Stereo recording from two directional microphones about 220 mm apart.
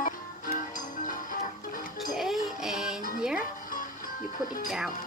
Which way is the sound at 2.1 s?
Centre (ahead or behind).